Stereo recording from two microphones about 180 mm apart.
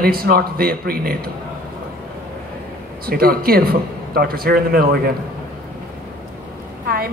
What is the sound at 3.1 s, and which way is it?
A woman's voice, 55° right (ahead or behind).